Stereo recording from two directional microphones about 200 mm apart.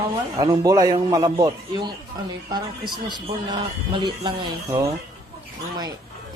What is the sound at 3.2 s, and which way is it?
A man's voice, 25° right (ahead or behind).